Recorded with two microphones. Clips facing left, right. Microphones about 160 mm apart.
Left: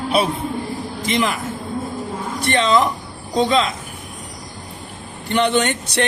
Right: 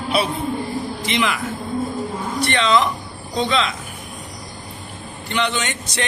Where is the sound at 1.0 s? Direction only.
45° left (ahead or behind).